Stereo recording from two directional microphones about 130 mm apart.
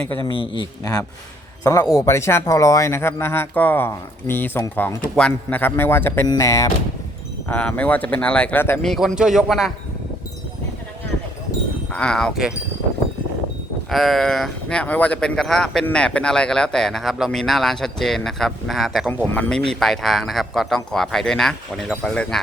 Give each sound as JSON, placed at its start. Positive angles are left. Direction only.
{"t": 0.3, "sound": "speech", "side_deg": 40}
{"t": 7.5, "sound": "speech", "side_deg": 10}
{"t": 8.8, "sound": "speech", "side_deg": 0}
{"t": 11.9, "sound": "speech", "side_deg": 5}
{"t": 13.9, "sound": "speech", "side_deg": 0}